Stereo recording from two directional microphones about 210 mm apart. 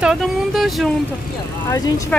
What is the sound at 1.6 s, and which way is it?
Speech, 15° left (ahead or behind).